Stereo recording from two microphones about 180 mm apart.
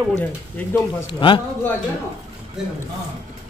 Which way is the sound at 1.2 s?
30° left (ahead or behind).